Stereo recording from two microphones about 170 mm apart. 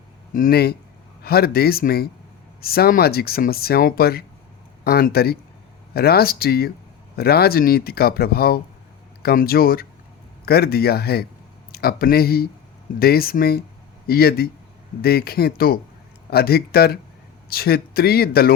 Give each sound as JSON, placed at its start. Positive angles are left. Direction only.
{"t": 0.3, "sound": "speech", "side_deg": 60}